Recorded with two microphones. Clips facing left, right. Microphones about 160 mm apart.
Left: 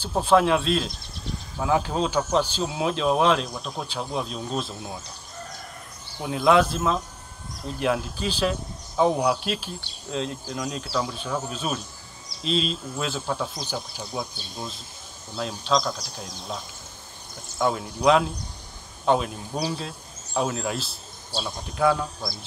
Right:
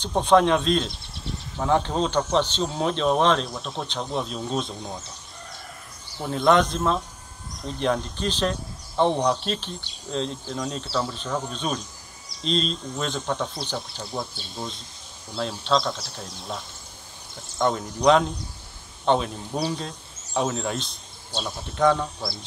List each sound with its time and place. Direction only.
0.0 s speech: 5° left (ahead or behind)
0.9 s a sound: 30° right (ahead or behind)
1.6 s speech: 5° left (ahead or behind)
6.2 s speech: 5° left (ahead or behind)
14.0 s speech: centre (ahead or behind)
15.6 s a man's voice: centre (ahead or behind)